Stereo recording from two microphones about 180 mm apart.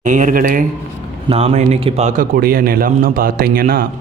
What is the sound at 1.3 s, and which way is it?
A man's voice, 30° right (ahead or behind).